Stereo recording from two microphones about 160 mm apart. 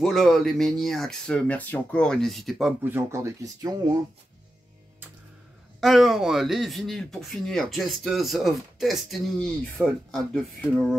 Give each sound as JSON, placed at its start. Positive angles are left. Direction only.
{"t": 0.0, "sound": "speech", "side_deg": 0}
{"t": 2.8, "sound": "speech", "side_deg": -15}
{"t": 5.8, "sound": "speech", "side_deg": 0}